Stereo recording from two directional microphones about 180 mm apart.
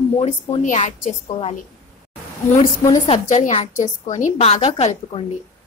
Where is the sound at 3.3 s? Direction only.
40° left (ahead or behind).